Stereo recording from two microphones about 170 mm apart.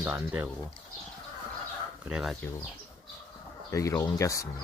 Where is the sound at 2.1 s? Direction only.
5° right (ahead or behind).